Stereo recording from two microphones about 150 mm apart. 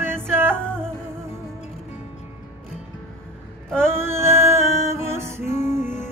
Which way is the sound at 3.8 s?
15° right (ahead or behind).